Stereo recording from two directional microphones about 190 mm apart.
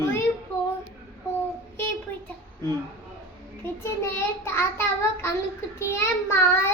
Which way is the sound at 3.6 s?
15° left (ahead or behind).